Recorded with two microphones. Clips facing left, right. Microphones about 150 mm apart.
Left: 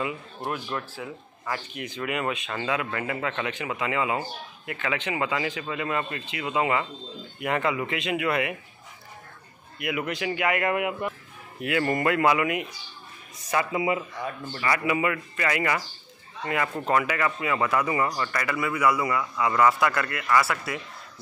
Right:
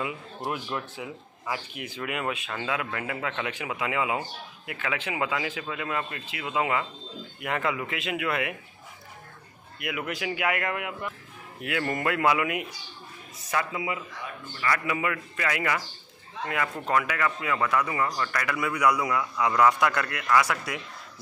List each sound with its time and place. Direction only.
0.4 s speech: 15° right (ahead or behind); by 8.5 s centre (ahead or behind)
9.8 s speech: centre (ahead or behind)
10.6 s a man's voice: 15° left (ahead or behind)
11.6 s speech: centre (ahead or behind)
13.7 s speech: 25° left (ahead or behind)
14.6 s speech: 10° left (ahead or behind)